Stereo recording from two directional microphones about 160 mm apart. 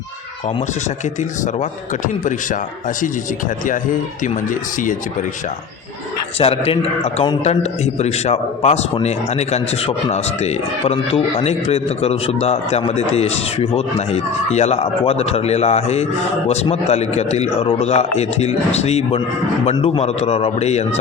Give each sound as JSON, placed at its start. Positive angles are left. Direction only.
{"t": 6.4, "sound": "a man's voice", "side_deg": 40}
{"t": 19.7, "sound": "a man's voice", "side_deg": 30}
{"t": 20.0, "sound": "a man's voice", "side_deg": 40}